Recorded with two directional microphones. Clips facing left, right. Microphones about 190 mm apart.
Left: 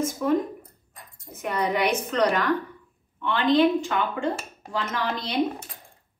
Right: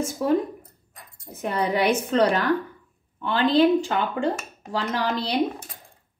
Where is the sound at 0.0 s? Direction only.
30° right (ahead or behind).